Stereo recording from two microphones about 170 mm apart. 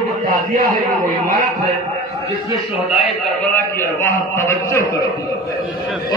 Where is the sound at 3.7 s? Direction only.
15° left (ahead or behind).